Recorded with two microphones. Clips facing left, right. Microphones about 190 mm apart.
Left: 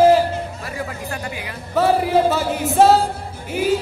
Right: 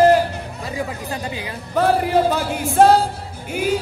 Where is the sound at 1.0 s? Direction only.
20° right (ahead or behind).